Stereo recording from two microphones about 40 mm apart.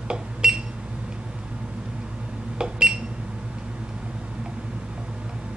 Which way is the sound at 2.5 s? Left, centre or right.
Right.